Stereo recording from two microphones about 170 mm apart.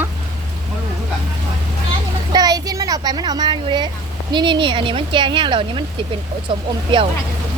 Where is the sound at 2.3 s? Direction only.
20° right (ahead or behind).